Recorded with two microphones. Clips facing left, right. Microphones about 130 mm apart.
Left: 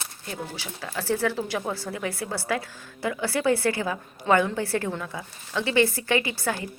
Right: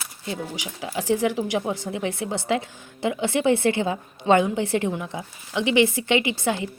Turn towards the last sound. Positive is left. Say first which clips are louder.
# right 3 dB
turn(degrees=-20)  # may be behind; listen again after turning